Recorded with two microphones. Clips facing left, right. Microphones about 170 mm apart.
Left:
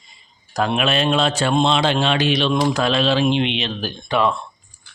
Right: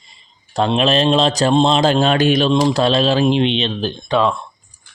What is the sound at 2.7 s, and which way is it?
A man's voice, 35° right (ahead or behind).